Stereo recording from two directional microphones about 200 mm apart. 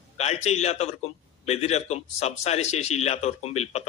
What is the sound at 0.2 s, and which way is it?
A man's voice, 35° left (ahead or behind).